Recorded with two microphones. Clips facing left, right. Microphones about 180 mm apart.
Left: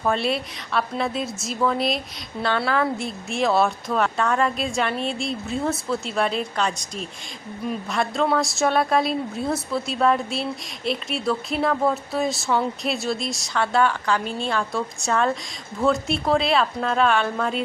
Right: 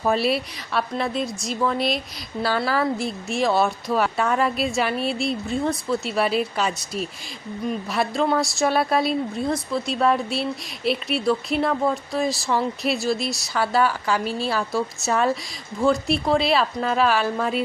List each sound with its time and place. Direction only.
0.0 s a woman's voice: 5° right (ahead or behind)